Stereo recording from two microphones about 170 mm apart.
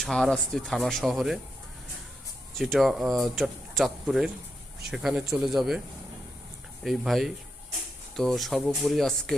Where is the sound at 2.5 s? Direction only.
Centre (ahead or behind).